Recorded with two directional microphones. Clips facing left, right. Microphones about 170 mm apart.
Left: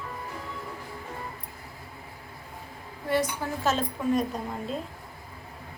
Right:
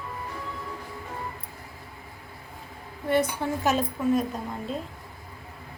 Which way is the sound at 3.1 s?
20° right (ahead or behind).